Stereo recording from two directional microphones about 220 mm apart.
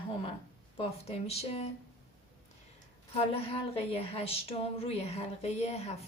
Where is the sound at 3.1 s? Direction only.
25° left (ahead or behind).